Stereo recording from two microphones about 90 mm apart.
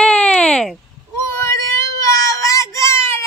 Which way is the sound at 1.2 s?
30° left (ahead or behind).